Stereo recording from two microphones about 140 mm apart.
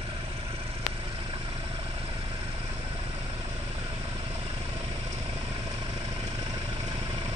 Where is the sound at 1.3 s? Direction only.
40° right (ahead or behind).